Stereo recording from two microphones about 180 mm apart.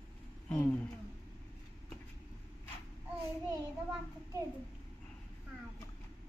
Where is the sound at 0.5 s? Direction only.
10° left (ahead or behind).